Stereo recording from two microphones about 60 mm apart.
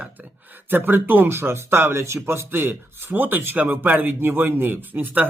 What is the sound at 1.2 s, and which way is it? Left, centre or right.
Speech, right.